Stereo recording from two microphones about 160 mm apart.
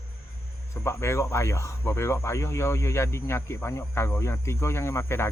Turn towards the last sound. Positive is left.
turn(degrees=15)  # may be behind; listen again after turning